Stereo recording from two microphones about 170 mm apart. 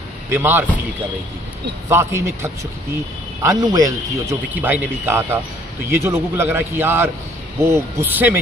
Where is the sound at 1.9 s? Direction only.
15° right (ahead or behind).